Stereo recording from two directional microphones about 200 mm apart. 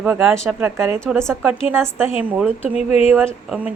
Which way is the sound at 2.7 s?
30° left (ahead or behind).